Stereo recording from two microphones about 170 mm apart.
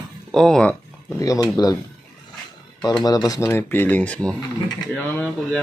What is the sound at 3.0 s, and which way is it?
Speech, 20° left (ahead or behind).